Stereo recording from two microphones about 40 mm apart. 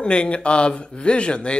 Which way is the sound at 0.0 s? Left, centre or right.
Left.